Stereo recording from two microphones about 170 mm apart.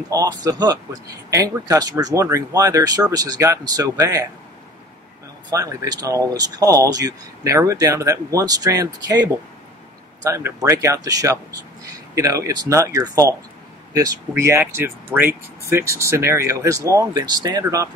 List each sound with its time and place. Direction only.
0.1 s speech: 20° right (ahead or behind)
5.5 s speech: 20° right (ahead or behind)
10.2 s speech: 20° right (ahead or behind)